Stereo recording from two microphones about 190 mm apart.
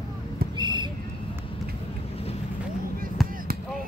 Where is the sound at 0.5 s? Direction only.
25° right (ahead or behind).